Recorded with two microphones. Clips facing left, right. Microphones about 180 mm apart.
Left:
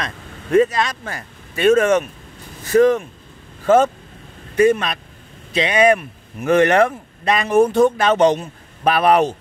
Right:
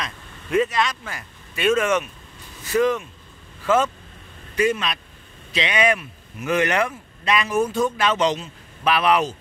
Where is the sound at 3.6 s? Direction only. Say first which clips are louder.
Left 6 dB; 50° left (ahead or behind).